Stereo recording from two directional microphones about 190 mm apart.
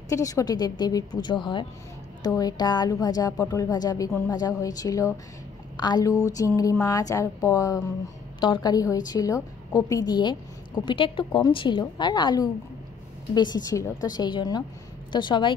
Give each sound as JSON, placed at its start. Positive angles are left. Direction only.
{"t": 0.1, "sound": "a woman's voice", "side_deg": 15}